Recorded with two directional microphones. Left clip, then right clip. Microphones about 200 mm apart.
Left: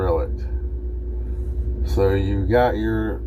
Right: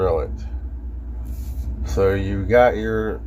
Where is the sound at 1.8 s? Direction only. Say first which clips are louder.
Right 1 dB; 35° right (ahead or behind).